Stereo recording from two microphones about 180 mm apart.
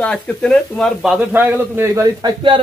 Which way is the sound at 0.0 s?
5° left (ahead or behind).